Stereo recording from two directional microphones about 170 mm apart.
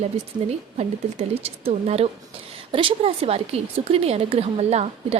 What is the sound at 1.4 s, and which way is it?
A woman's voice, 35° right (ahead or behind).